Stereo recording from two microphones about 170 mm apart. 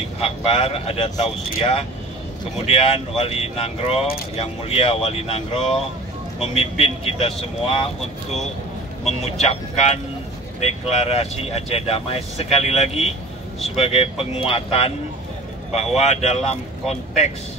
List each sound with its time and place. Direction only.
0.2 s speech: 35° left (ahead or behind)
9.4 s speech: 40° left (ahead or behind)
16.0 s speech: 40° left (ahead or behind)